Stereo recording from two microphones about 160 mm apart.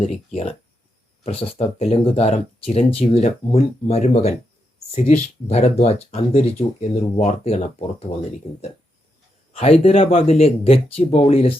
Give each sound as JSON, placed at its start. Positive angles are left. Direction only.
{"t": 0.0, "sound": "speech", "side_deg": 40}